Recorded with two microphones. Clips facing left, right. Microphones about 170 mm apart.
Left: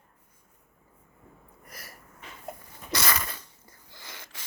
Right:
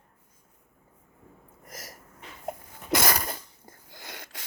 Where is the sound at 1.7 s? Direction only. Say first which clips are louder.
Right 4 dB; 40° right (ahead or behind); by 4.4 s 60° right (ahead or behind).